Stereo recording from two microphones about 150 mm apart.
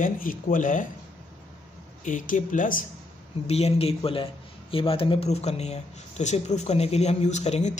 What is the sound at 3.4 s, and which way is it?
Speech, 45° left (ahead or behind).